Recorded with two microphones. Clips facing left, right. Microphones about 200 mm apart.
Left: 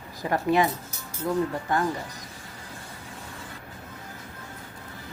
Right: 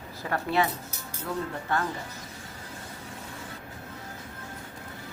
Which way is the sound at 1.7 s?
15° left (ahead or behind).